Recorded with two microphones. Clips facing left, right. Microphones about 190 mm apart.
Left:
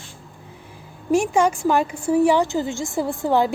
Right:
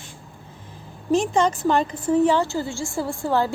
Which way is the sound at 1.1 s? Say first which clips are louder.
Left 2 dB; 10° left (ahead or behind).